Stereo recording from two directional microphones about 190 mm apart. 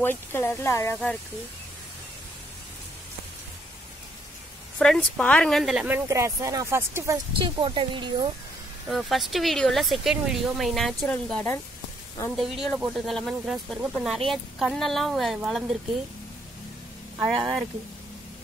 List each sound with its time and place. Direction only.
0.0 s speech: 10° left (ahead or behind)
4.7 s a woman's voice: 5° left (ahead or behind); by 7.2 s 15° right (ahead or behind)
7.3 s speech: 25° right (ahead or behind)
8.9 s speech: centre (ahead or behind)
17.2 s speech: 20° right (ahead or behind)